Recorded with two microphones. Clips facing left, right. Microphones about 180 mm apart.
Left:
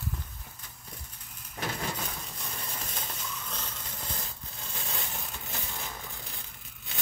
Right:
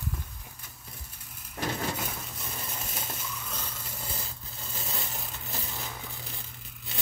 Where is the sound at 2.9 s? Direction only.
5° right (ahead or behind).